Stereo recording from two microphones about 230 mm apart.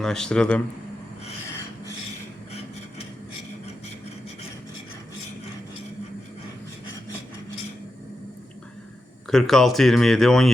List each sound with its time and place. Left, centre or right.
0.0 s speech: centre
2.5 s a sound: left
9.3 s speech: centre